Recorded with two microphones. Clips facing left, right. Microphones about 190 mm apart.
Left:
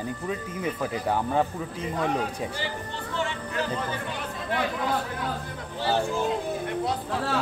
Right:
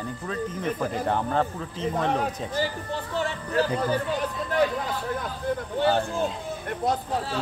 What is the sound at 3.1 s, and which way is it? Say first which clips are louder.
Speech: right 4 dB; 40° right (ahead or behind).